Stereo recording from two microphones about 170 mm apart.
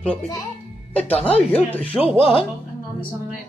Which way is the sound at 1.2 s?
10° left (ahead or behind).